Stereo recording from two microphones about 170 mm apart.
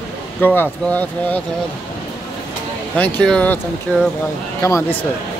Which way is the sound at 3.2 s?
5° left (ahead or behind).